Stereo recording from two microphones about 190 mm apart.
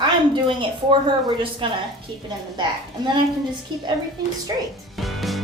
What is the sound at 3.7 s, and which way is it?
Speech, 25° right (ahead or behind).